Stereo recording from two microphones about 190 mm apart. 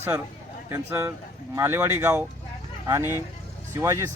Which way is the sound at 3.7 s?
15° right (ahead or behind).